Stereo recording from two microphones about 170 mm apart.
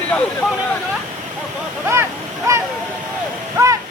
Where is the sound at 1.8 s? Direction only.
15° right (ahead or behind).